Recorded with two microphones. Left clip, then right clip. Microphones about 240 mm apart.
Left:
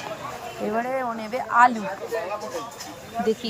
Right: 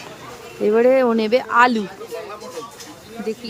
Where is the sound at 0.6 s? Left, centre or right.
Right.